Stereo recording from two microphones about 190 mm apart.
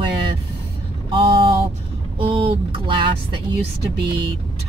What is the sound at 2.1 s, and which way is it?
Vehicle, 25° right (ahead or behind).